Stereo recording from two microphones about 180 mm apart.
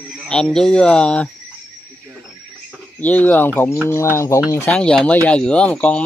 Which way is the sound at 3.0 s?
10° left (ahead or behind).